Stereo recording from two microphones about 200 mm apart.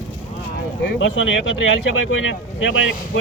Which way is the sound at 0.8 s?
65° left (ahead or behind).